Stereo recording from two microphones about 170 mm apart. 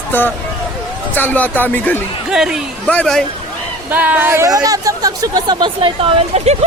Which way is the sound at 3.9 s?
10° right (ahead or behind).